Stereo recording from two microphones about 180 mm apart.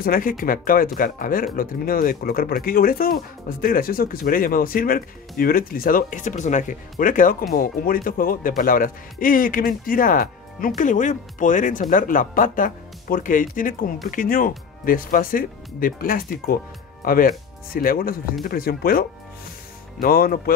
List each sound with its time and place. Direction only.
0.0 s speech: 55° left (ahead or behind)